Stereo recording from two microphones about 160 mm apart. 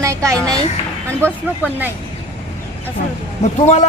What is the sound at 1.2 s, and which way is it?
Speech, 10° right (ahead or behind).